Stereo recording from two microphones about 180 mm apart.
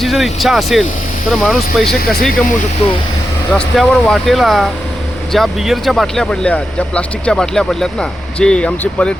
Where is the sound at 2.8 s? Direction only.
35° left (ahead or behind).